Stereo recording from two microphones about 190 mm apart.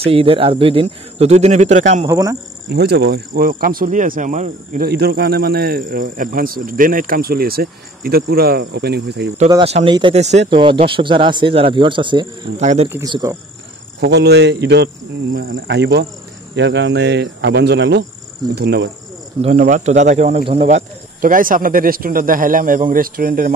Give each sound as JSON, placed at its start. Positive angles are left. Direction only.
{"t": 0.0, "sound": "speech", "side_deg": -30}
{"t": 2.0, "sound": "speech", "side_deg": -15}
{"t": 2.7, "sound": "speech", "side_deg": -60}
{"t": 9.5, "sound": "speech", "side_deg": -30}
{"t": 12.9, "sound": "speech", "side_deg": -20}
{"t": 13.9, "sound": "cricket", "side_deg": -65}
{"t": 19.4, "sound": "speech", "side_deg": -40}